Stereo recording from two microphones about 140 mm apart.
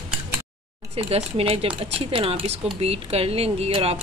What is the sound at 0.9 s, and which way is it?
Speech, 45° right (ahead or behind).